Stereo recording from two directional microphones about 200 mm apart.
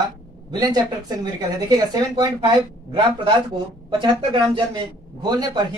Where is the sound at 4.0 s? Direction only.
25° right (ahead or behind).